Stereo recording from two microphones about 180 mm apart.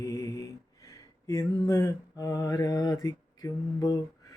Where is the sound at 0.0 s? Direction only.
20° left (ahead or behind).